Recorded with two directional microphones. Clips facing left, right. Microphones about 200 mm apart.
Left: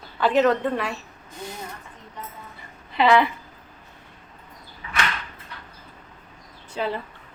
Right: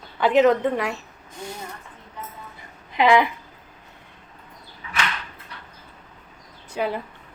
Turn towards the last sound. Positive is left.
turn(degrees=-10)  # may be behind; listen again after turning